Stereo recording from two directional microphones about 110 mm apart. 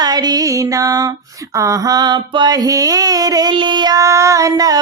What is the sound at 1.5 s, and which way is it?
Mantra, 30° right (ahead or behind).